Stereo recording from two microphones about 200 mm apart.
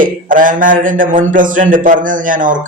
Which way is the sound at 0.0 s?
40° right (ahead or behind).